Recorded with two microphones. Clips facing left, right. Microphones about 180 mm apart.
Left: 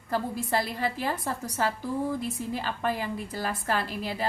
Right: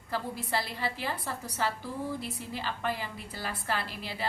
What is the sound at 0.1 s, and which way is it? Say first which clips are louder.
A woman's voice: left 5 dB; 45° left (ahead or behind).